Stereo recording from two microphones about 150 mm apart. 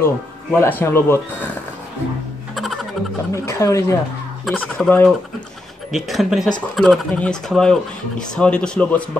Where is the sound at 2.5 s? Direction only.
Centre (ahead or behind).